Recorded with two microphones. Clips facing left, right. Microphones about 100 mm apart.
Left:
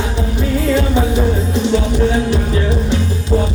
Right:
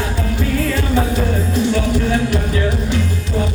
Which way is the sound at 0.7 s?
20° left (ahead or behind).